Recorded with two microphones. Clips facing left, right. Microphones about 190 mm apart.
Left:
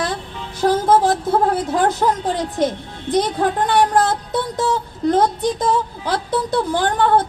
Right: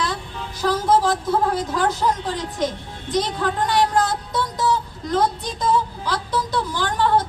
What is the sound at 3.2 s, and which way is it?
Speech, 55° left (ahead or behind).